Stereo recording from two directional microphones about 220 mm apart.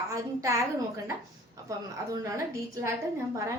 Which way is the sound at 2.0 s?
15° right (ahead or behind).